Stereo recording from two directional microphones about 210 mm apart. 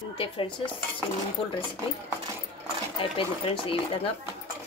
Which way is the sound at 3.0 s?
25° left (ahead or behind).